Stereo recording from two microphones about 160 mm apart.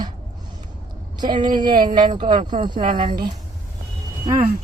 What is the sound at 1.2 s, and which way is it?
Speech, 30° right (ahead or behind).